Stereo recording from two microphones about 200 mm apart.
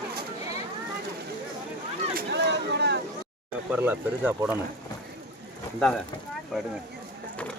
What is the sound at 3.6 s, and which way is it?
Speech, 10° right (ahead or behind).